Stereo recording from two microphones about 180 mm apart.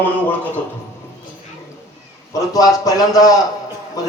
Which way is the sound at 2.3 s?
20° left (ahead or behind).